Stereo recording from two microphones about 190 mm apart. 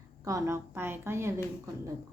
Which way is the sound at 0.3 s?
15° right (ahead or behind).